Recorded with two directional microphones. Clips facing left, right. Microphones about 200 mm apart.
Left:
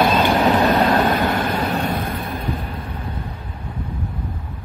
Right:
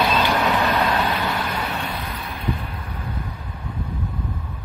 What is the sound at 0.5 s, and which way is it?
Vehicle, 45° left (ahead or behind).